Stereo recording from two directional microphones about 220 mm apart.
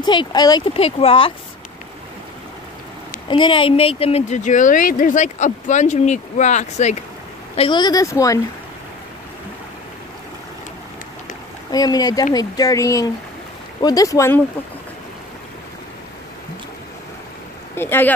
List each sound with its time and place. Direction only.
0.0 s speech: 20° left (ahead or behind)
3.3 s speech: 20° left (ahead or behind)
11.7 s speech: 15° left (ahead or behind)
17.7 s speech: 10° left (ahead or behind)